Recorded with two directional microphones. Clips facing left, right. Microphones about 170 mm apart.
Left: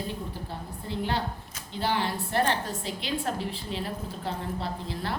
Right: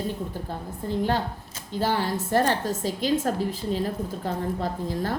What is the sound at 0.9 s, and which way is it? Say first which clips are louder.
A woman's voice: right 5 dB; 45° right (ahead or behind).